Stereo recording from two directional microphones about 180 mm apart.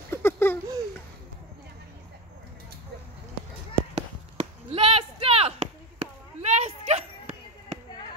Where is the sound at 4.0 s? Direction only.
35° right (ahead or behind).